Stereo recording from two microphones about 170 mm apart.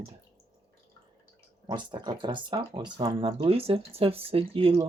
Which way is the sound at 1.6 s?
25° right (ahead or behind).